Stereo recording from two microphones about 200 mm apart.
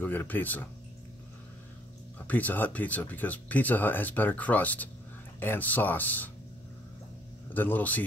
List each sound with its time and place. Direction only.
0.0 s speech: 10° left (ahead or behind)
2.1 s speech: 10° left (ahead or behind)
7.5 s speech: 10° left (ahead or behind)